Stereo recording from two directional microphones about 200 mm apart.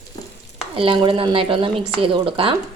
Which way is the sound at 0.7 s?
25° right (ahead or behind).